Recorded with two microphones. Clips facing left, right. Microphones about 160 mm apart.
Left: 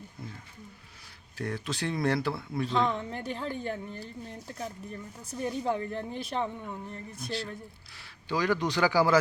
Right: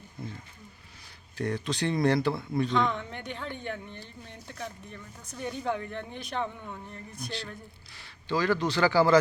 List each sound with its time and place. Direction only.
0.2 s a sound: centre (ahead or behind)
1.4 s speech: centre (ahead or behind)
3.0 s speech: 35° left (ahead or behind)
6.6 s speech: centre (ahead or behind)
8.4 s speech: 15° left (ahead or behind)